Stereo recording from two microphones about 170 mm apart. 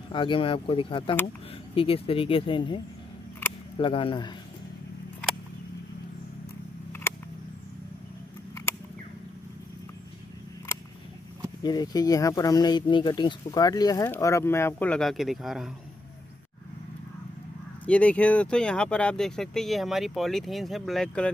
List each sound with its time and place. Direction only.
0.1 s speech: 30° left (ahead or behind)
3.8 s speech: 30° left (ahead or behind)
6.9 s a sound: 15° left (ahead or behind)
11.6 s speech: 25° left (ahead or behind); by 15.7 s centre (ahead or behind)
17.8 s speech: 5° left (ahead or behind)